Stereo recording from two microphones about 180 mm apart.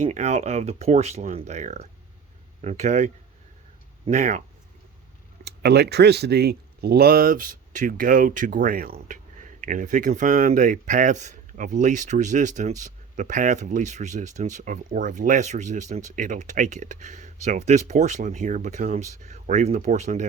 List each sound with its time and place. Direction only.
0.1 s speech: 40° right (ahead or behind)
5.5 s speech: 65° right (ahead or behind); by 20.2 s 40° right (ahead or behind)